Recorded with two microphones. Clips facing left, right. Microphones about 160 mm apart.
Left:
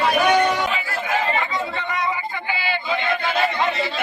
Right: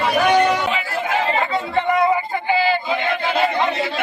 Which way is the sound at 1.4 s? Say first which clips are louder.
Right 5 dB; 55° right (ahead or behind).